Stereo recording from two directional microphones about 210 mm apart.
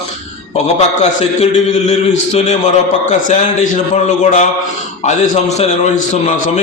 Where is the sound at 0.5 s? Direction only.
30° left (ahead or behind).